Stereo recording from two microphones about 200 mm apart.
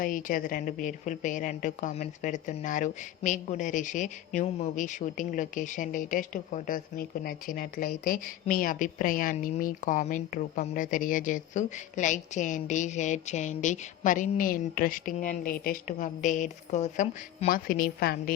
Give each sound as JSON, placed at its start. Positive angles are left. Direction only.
{"t": 0.0, "sound": "a woman's voice", "side_deg": 40}